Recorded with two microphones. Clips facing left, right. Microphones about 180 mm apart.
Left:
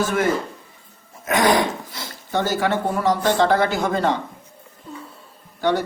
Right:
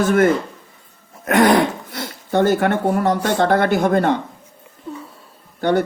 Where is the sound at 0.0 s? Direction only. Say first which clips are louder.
Right 5 dB; 55° right (ahead or behind).